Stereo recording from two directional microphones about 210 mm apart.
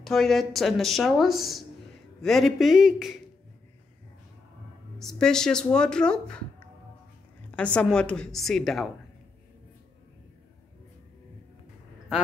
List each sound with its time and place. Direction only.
0.0 s speech: centre (ahead or behind)
4.9 s speech: centre (ahead or behind)
7.5 s speech: 5° left (ahead or behind)